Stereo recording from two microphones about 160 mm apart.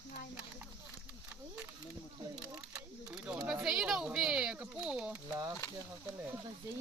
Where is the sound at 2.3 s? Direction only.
5° right (ahead or behind).